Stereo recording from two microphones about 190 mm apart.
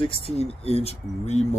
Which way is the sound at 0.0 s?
30° left (ahead or behind).